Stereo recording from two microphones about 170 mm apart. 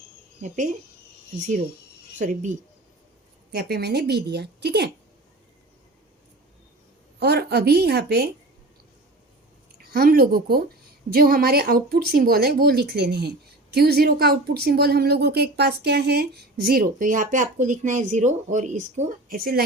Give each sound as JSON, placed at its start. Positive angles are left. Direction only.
{"t": 0.4, "sound": "speech", "side_deg": -50}
{"t": 2.1, "sound": "speech", "side_deg": -45}
{"t": 3.5, "sound": "a woman's voice", "side_deg": -65}
{"t": 7.2, "sound": "a woman's voice", "side_deg": -75}
{"t": 9.7, "sound": "speech", "side_deg": -60}